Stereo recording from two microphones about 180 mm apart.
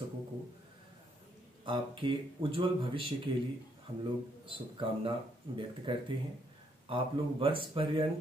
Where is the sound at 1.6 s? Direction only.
25° right (ahead or behind).